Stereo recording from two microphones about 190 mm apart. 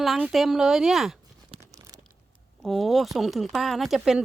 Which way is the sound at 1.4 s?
30° right (ahead or behind).